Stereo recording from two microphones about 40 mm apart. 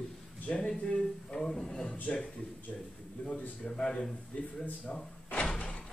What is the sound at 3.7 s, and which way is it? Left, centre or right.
Speech, centre.